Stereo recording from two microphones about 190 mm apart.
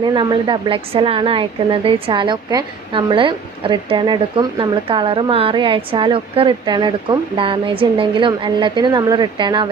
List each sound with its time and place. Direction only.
0.0 s a woman's voice: 25° right (ahead or behind)